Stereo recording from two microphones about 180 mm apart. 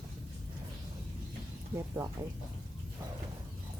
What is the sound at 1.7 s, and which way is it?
Speech, 15° right (ahead or behind).